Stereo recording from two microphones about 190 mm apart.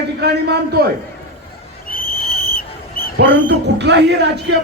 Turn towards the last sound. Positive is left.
turn(degrees=-65)  # may be behind; listen again after turning